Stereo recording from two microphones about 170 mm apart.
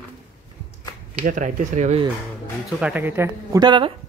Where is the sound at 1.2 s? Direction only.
50° right (ahead or behind).